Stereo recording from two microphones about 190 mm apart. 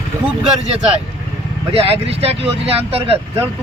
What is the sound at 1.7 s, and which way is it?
Speech, 30° right (ahead or behind).